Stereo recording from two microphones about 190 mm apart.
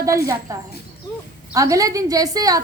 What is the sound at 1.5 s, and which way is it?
A woman's voice, 15° right (ahead or behind).